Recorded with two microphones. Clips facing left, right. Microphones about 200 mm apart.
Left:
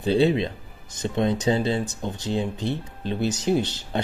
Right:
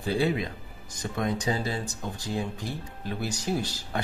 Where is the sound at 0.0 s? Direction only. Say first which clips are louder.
Left 6 dB; 25° left (ahead or behind).